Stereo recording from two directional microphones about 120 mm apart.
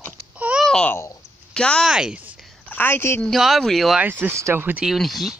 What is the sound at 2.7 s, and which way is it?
Speech, 15° left (ahead or behind).